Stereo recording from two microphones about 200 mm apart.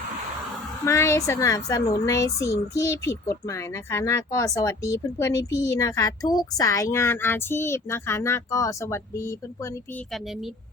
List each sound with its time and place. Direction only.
0.9 s a woman's voice: 15° left (ahead or behind)